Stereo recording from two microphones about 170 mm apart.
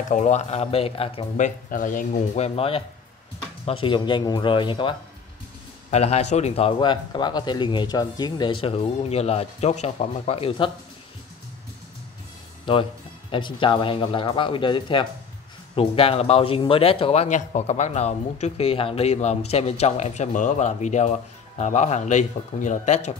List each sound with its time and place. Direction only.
0.1 s speech: 45° left (ahead or behind)
12.7 s speech: 30° left (ahead or behind)